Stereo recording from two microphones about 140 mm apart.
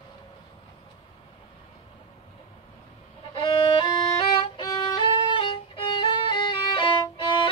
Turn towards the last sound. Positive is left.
turn(degrees=35)  # may be behind; listen again after turning